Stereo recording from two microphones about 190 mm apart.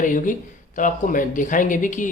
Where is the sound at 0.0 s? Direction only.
45° left (ahead or behind).